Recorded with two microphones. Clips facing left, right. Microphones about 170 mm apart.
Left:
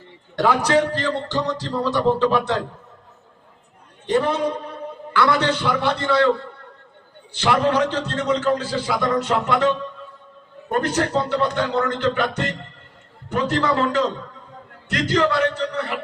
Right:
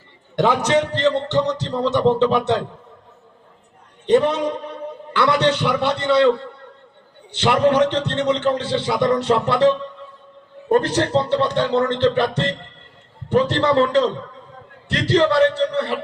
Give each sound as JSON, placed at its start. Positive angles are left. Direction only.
{"t": 0.7, "sound": "a man's voice", "side_deg": -25}
{"t": 4.0, "sound": "a man's voice", "side_deg": -20}
{"t": 7.3, "sound": "a man's voice", "side_deg": -20}